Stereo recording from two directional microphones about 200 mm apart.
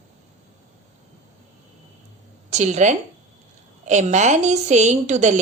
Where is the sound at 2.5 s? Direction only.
35° right (ahead or behind).